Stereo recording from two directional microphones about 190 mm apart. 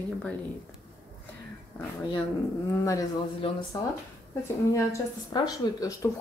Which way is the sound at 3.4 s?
30° left (ahead or behind).